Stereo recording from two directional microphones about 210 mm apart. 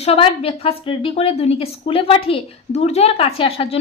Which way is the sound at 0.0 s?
30° left (ahead or behind).